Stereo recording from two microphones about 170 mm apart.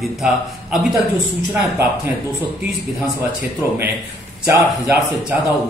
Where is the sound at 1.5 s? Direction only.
20° right (ahead or behind).